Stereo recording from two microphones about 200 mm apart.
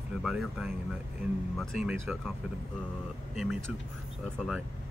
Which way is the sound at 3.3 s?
Centre (ahead or behind).